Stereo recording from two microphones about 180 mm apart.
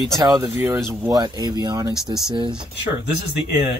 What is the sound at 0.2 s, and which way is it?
Speech, 15° right (ahead or behind).